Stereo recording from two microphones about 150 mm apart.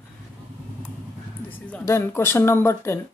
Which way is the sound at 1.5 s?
10° left (ahead or behind).